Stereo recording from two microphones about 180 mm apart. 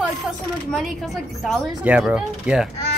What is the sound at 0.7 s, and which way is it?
Speech, centre (ahead or behind).